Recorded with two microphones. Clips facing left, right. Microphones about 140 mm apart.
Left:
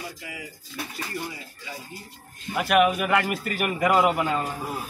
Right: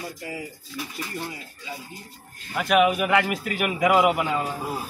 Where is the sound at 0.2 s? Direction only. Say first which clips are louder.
Right 5 dB; 35° right (ahead or behind).